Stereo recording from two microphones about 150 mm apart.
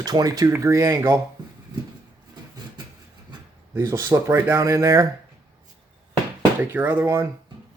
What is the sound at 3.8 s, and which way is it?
Speech, 20° right (ahead or behind).